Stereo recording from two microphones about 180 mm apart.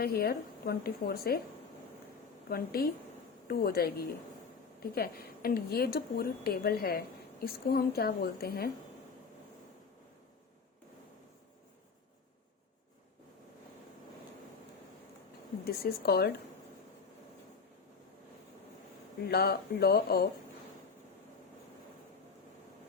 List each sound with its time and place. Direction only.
0.0 s a woman's voice: 60° left (ahead or behind)
2.5 s a woman's voice: 55° left (ahead or behind)
15.6 s a woman's voice: 60° left (ahead or behind)
19.2 s a woman's voice: 60° left (ahead or behind)